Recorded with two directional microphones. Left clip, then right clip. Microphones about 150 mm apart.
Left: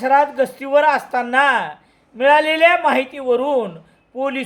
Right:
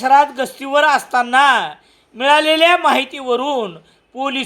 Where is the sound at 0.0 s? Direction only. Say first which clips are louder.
Right 2 dB; 20° right (ahead or behind).